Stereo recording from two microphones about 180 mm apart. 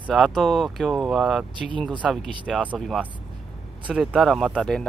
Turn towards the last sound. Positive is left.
turn(degrees=5)  # may be behind; listen again after turning